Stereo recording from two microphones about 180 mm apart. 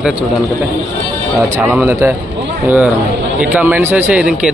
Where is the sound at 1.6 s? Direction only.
10° right (ahead or behind).